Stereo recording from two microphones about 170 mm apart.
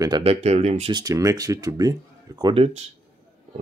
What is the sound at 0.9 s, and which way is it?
Speech, 20° right (ahead or behind).